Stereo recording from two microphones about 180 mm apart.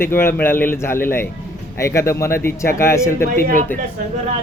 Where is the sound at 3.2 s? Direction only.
55° left (ahead or behind).